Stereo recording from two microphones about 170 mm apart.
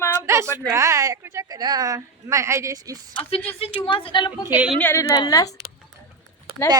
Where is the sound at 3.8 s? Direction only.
30° left (ahead or behind).